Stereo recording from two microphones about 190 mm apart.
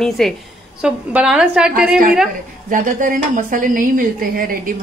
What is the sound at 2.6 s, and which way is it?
A woman's voice, 45° right (ahead or behind).